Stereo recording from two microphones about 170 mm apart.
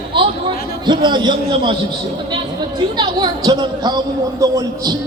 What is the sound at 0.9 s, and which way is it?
Speech, 25° right (ahead or behind).